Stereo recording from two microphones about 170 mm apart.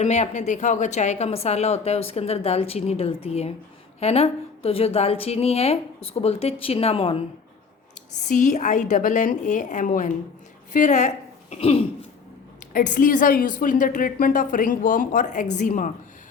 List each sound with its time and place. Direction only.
0.0 s speech: 40° left (ahead or behind)
8.2 s a woman's voice: 45° left (ahead or behind)
12.7 s a woman's voice: 50° left (ahead or behind)